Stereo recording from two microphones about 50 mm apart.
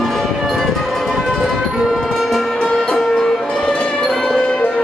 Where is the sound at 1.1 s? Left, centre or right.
Centre.